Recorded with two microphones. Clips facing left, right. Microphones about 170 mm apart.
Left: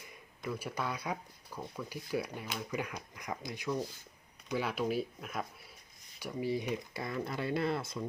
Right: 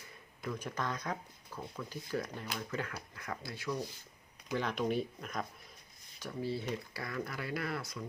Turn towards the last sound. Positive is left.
turn(degrees=25)  # may be behind; listen again after turning